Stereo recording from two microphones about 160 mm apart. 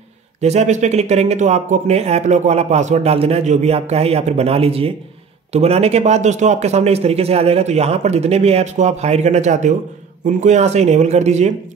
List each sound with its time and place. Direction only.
0.4 s speech: 45° right (ahead or behind)